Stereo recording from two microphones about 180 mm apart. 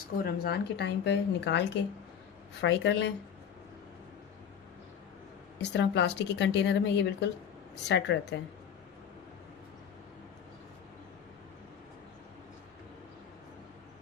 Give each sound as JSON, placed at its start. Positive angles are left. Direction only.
{"t": 0.2, "sound": "a woman's voice", "side_deg": 60}
{"t": 5.5, "sound": "a woman's voice", "side_deg": 70}